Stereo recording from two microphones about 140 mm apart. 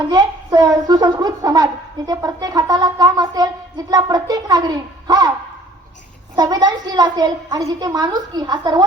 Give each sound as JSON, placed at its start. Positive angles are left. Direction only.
{"t": 0.1, "sound": "speech", "side_deg": -30}
{"t": 6.3, "sound": "speech", "side_deg": -30}